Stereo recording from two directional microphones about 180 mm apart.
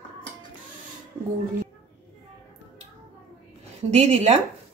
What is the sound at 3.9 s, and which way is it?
Speech, 35° right (ahead or behind).